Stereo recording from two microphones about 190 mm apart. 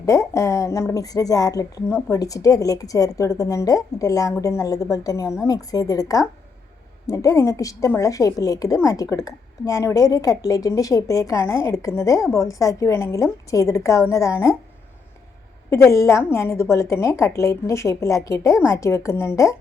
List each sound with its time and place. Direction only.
0.0 s a woman's voice: 15° left (ahead or behind)
15.7 s a woman's voice: 15° left (ahead or behind)